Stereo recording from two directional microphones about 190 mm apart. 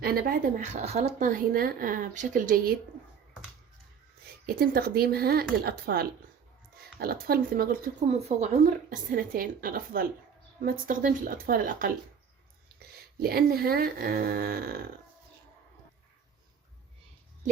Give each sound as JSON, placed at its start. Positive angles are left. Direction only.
{"t": 0.0, "sound": "speech", "side_deg": -55}
{"t": 0.6, "sound": "speech", "side_deg": -40}
{"t": 4.4, "sound": "speech", "side_deg": -50}
{"t": 8.0, "sound": "speech", "side_deg": -35}
{"t": 8.9, "sound": "speech", "side_deg": -45}